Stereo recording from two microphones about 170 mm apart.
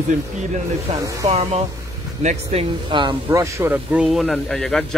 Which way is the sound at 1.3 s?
40° right (ahead or behind).